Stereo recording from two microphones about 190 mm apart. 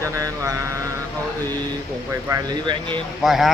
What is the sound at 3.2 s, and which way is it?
Speech, centre (ahead or behind).